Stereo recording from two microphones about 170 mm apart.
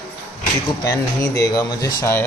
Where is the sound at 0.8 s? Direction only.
20° left (ahead or behind).